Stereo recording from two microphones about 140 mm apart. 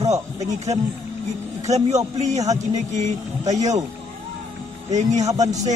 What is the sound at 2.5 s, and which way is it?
Speech, 55° right (ahead or behind).